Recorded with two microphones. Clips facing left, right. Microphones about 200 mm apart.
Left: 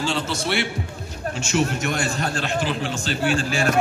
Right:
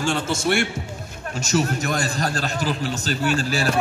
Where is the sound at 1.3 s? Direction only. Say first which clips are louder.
Right 1 dB; 40° right (ahead or behind).